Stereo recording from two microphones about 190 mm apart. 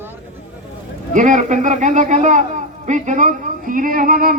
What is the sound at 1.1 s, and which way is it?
A man's voice, 40° right (ahead or behind).